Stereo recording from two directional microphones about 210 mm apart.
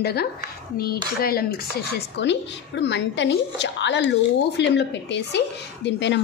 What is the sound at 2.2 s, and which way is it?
A woman's voice, 55° left (ahead or behind).